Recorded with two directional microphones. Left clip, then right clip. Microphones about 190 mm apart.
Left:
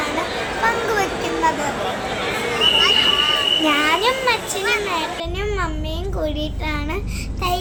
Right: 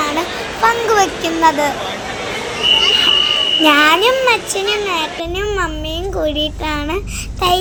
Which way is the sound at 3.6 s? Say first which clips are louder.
Right 7 dB; 45° right (ahead or behind).